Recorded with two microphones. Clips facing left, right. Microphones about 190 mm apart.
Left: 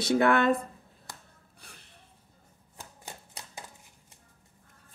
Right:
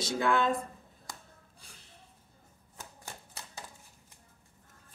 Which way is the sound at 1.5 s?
60° left (ahead or behind).